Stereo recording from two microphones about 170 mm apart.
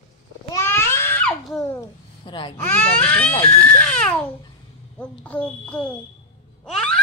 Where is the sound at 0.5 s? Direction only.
15° left (ahead or behind).